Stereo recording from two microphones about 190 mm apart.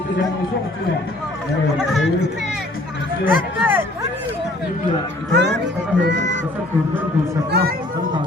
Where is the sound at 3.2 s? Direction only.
10° right (ahead or behind).